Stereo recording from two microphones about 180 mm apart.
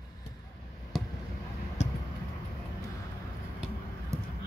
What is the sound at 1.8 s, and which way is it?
Vehicle, 40° left (ahead or behind).